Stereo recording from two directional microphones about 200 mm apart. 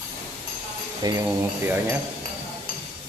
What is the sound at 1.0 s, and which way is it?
Speech, 20° right (ahead or behind).